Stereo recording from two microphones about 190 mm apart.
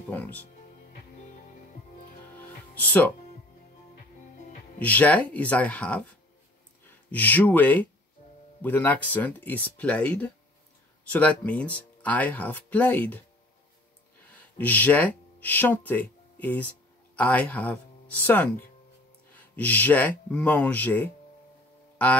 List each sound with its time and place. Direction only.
0.1 s speech: 10° left (ahead or behind)
2.3 s music: 10° left (ahead or behind)
4.7 s speech: 10° left (ahead or behind)
14.3 s speech: 10° left (ahead or behind)